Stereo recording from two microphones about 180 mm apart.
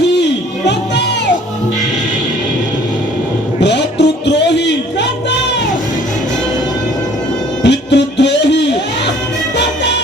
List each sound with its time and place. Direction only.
0.2 s music: 70° left (ahead or behind)
3.6 s a sound: 70° left (ahead or behind)
7.6 s music: 75° left (ahead or behind)